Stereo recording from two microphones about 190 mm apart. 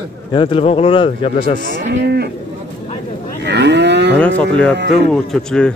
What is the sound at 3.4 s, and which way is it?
Cattle, 65° right (ahead or behind).